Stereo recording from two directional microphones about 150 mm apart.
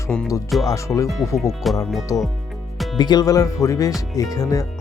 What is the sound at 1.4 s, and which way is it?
Speech, centre (ahead or behind).